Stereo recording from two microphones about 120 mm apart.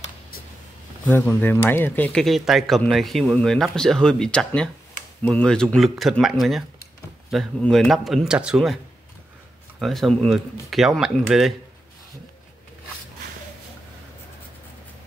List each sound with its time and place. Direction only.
1.0 s speech: 15° left (ahead or behind)
2.2 s speech: centre (ahead or behind)
9.8 s speech: centre (ahead or behind)